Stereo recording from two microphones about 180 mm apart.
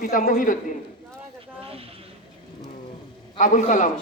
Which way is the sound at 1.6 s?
30° right (ahead or behind).